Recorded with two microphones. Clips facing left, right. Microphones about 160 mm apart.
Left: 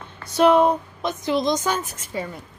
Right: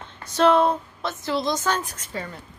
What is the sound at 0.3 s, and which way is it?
Speech, 15° left (ahead or behind).